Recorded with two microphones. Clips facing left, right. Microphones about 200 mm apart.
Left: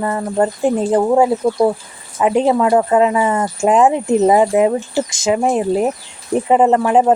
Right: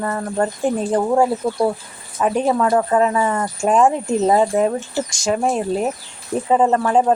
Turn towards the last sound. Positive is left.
turn(degrees=15)  # may be behind; listen again after turning